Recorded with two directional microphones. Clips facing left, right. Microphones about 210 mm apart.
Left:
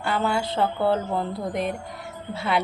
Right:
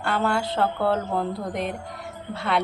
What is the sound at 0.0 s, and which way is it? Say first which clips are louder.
A woman's voice: even; centre (ahead or behind).